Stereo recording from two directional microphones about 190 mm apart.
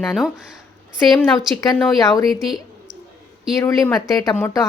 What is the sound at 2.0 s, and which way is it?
Speech, 20° left (ahead or behind).